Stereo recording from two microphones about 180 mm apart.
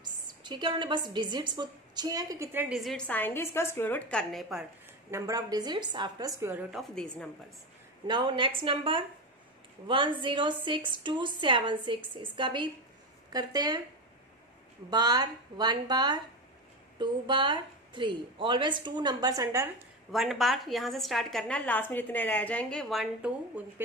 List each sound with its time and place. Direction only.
0.0 s a woman's voice: 25° right (ahead or behind)
2.8 s a woman's voice: 5° left (ahead or behind)
5.1 s a woman's voice: 20° right (ahead or behind)
6.7 s a woman's voice: centre (ahead or behind)
8.1 s a woman's voice: 25° right (ahead or behind)
14.9 s a woman's voice: 20° right (ahead or behind)
20.1 s a woman's voice: centre (ahead or behind)